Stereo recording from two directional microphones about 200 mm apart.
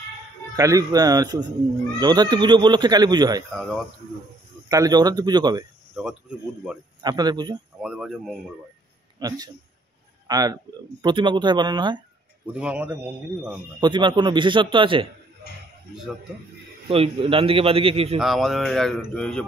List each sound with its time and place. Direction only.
0.6 s speech: 15° right (ahead or behind)
4.6 s speech: 15° right (ahead or behind)
5.9 s speech: 5° right (ahead or behind)
7.0 s speech: 20° right (ahead or behind)
7.8 s speech: 5° right (ahead or behind)
9.2 s speech: 20° right (ahead or behind)
12.5 s speech: 5° right (ahead or behind)
13.7 s speech: 20° right (ahead or behind)
16.9 s speech: 30° right (ahead or behind)
18.2 s speech: centre (ahead or behind)